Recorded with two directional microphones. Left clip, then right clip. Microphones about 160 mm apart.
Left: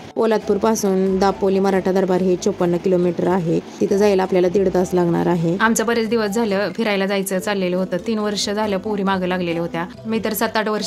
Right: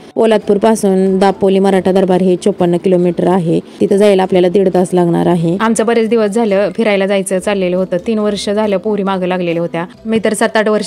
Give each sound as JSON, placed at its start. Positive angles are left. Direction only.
{"t": 0.2, "sound": "a woman's voice", "side_deg": -35}